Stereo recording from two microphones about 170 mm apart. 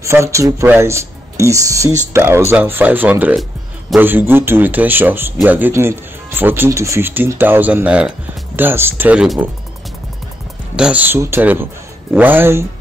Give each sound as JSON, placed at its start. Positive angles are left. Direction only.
{"t": 0.0, "sound": "speech", "side_deg": -15}
{"t": 10.8, "sound": "speech", "side_deg": -10}